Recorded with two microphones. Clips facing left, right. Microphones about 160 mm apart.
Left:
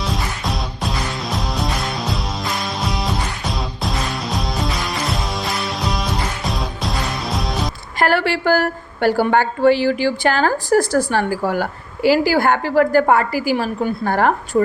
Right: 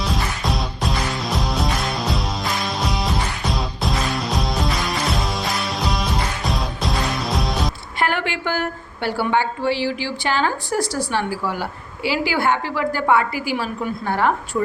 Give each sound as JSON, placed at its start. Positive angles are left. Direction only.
{"t": 0.0, "sound": "music", "side_deg": 0}
{"t": 7.9, "sound": "a woman's voice", "side_deg": 40}